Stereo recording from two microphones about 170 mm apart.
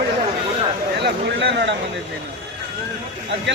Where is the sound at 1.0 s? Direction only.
90° right.